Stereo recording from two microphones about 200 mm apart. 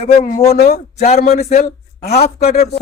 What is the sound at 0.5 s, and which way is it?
Speech, 50° left (ahead or behind).